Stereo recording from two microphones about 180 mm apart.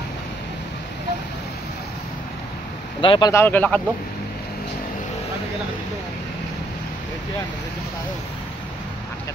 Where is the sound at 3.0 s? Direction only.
25° left (ahead or behind); by 3.8 s 10° left (ahead or behind).